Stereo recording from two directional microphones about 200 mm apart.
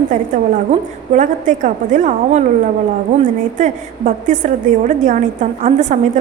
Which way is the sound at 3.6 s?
40° right (ahead or behind).